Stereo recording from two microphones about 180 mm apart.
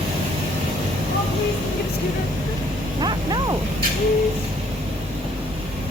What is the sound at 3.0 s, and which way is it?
Bow-wow, 25° right (ahead or behind).